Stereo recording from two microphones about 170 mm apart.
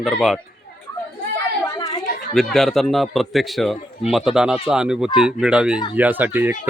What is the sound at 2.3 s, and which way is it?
Speech, centre (ahead or behind).